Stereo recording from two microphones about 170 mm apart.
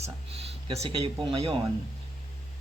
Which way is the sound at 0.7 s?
35° right (ahead or behind).